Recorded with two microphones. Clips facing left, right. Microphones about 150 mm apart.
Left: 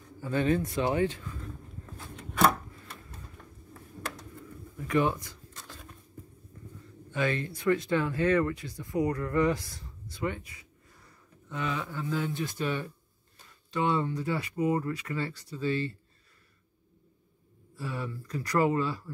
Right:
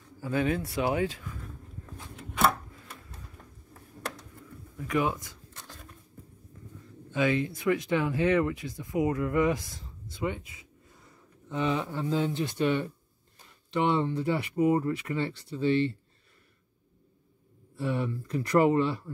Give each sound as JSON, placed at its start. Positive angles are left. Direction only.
{"t": 0.2, "sound": "speech", "side_deg": -10}
{"t": 2.3, "sound": "a sound", "side_deg": -5}
{"t": 4.7, "sound": "speech", "side_deg": 0}
{"t": 7.1, "sound": "speech", "side_deg": -15}
{"t": 17.7, "sound": "speech", "side_deg": -25}